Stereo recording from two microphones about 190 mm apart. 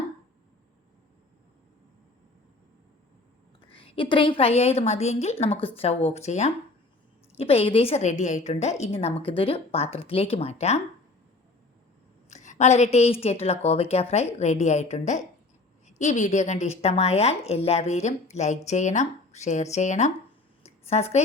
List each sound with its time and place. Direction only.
3.7 s speech: 30° left (ahead or behind)
12.3 s a woman's voice: 40° left (ahead or behind)